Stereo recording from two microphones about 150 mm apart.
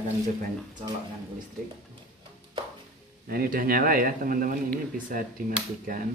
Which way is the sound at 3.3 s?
75° right (ahead or behind).